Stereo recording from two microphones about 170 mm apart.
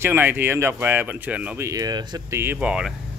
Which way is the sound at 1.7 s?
20° right (ahead or behind).